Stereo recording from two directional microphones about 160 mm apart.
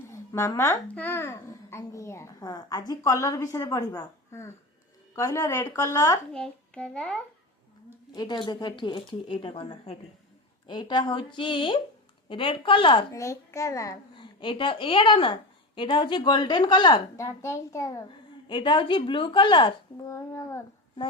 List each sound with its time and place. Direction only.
0.1 s a child's voice: 20° left (ahead or behind)
6.3 s a child's voice: 5° left (ahead or behind)
8.1 s a child's voice: 25° left (ahead or behind)
13.1 s a child's voice: 20° left (ahead or behind)
14.2 s a child's voice: 30° left (ahead or behind)
18.4 s a woman's voice: 30° left (ahead or behind)
20.1 s a child's voice: 20° left (ahead or behind)